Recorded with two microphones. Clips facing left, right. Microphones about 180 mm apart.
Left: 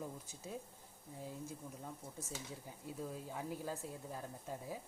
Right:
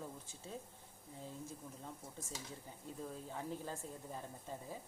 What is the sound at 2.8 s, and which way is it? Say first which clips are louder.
Speech: left 2 dB; 10° left (ahead or behind).